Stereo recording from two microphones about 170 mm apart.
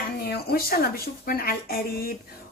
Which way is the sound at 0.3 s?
65° left (ahead or behind).